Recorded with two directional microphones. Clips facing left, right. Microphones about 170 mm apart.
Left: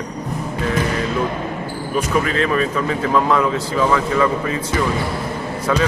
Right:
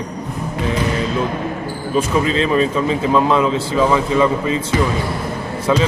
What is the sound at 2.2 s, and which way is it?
Speech, 20° right (ahead or behind).